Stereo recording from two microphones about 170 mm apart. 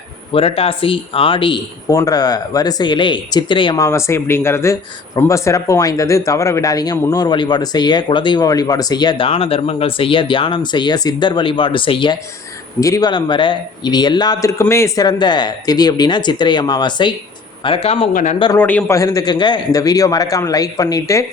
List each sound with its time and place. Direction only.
0.3 s speech: 35° left (ahead or behind)
3.8 s speech: 15° left (ahead or behind); by 18.1 s 35° left (ahead or behind)
18.1 s speech: 45° left (ahead or behind)
18.5 s speech: 10° left (ahead or behind)